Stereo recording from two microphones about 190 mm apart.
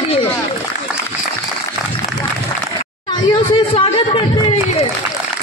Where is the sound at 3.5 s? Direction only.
30° left (ahead or behind).